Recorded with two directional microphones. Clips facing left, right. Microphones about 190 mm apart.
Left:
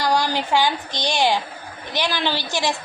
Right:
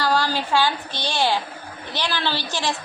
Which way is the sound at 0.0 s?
15° left (ahead or behind).